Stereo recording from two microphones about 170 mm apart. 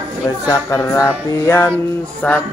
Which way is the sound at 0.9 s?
15° left (ahead or behind).